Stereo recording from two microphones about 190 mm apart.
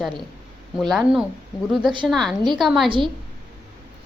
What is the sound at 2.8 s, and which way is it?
Speech, 25° right (ahead or behind).